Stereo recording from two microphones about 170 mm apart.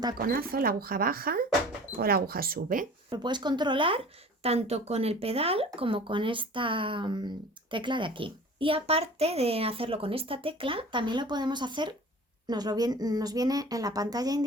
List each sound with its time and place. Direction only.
0.2 s speech: 60° right (ahead or behind)
3.1 s a child's voice: 25° right (ahead or behind)